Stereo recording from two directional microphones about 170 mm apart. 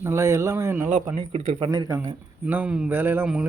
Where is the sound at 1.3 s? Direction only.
30° right (ahead or behind).